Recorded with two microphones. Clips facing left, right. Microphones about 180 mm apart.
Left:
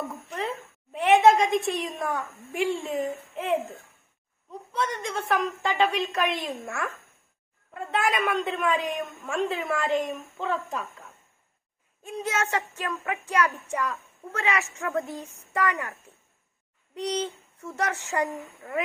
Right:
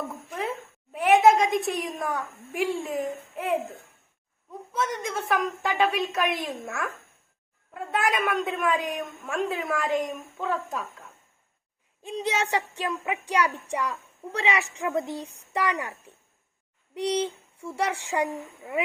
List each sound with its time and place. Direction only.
0.3 s a sound: centre (ahead or behind)
0.9 s a woman's voice: centre (ahead or behind)
12.2 s a woman's voice: 15° right (ahead or behind)